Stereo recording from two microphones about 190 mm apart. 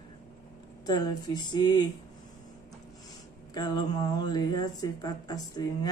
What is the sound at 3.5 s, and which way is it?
Speech, 20° left (ahead or behind).